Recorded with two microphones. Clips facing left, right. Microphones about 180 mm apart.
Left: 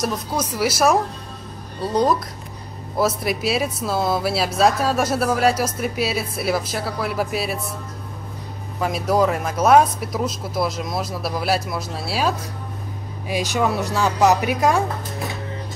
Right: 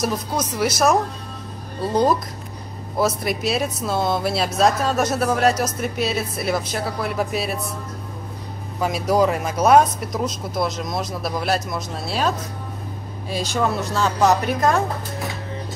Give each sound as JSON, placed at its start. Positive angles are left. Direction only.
{"t": 0.0, "sound": "speech", "side_deg": 5}
{"t": 3.0, "sound": "speech", "side_deg": 5}
{"t": 8.7, "sound": "speech", "side_deg": 0}